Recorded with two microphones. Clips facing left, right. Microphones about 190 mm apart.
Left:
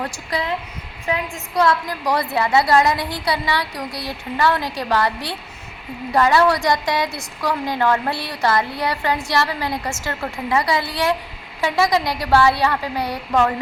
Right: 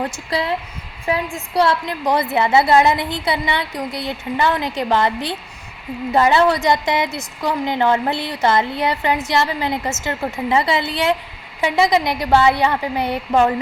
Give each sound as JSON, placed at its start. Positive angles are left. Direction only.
{"t": 0.0, "sound": "a woman's voice", "side_deg": -30}